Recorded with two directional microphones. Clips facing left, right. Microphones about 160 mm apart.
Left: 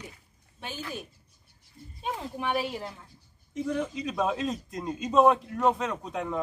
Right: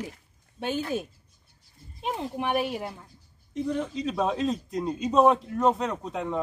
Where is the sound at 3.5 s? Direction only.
Centre (ahead or behind).